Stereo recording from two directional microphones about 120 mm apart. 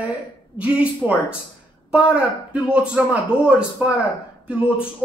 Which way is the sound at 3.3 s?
50° left (ahead or behind).